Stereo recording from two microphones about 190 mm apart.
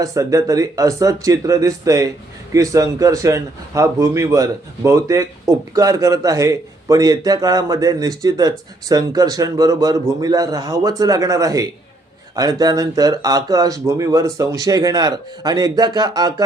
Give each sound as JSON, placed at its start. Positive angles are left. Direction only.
{"t": 0.0, "sound": "speech", "side_deg": -15}